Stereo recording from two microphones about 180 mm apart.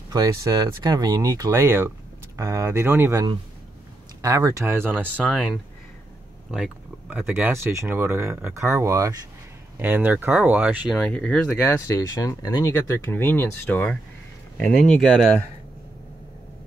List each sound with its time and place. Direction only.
0.1 s speech: 20° right (ahead or behind)
11.0 s speech: 10° left (ahead or behind)